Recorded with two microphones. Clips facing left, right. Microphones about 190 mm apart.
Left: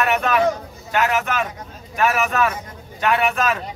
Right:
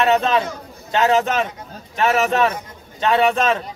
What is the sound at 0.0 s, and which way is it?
A man's voice, 25° right (ahead or behind).